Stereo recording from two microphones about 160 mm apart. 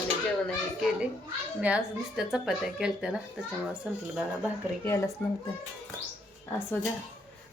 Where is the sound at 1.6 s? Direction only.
5° right (ahead or behind).